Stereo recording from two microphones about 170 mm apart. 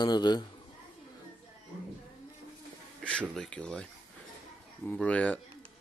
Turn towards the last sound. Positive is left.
turn(degrees=10)  # may be behind; listen again after turning